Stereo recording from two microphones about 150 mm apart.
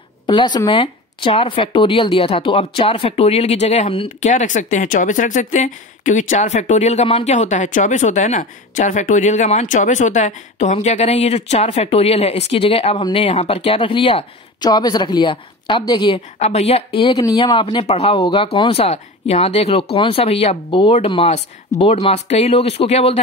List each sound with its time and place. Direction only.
0.3 s speech: 30° left (ahead or behind)
4.2 s speech: 55° left (ahead or behind); by 14.2 s 40° left (ahead or behind)
14.6 s a woman's voice: 25° left (ahead or behind)
16.3 s speech: 45° left (ahead or behind)